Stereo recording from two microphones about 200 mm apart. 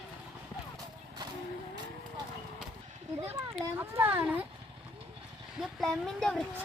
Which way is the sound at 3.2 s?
10° right (ahead or behind).